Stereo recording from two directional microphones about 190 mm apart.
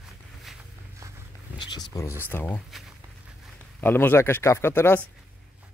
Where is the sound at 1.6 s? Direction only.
20° left (ahead or behind); by 2.8 s 5° left (ahead or behind).